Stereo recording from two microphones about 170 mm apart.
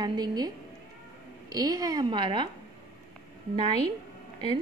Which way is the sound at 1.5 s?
20° right (ahead or behind).